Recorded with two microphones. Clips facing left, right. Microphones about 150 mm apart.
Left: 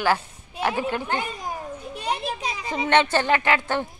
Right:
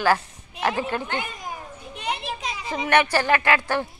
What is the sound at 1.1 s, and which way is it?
Speech, 40° left (ahead or behind).